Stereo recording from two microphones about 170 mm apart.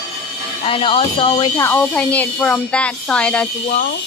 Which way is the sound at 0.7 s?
30° left (ahead or behind).